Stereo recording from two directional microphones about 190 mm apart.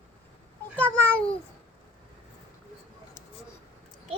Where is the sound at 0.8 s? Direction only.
10° left (ahead or behind).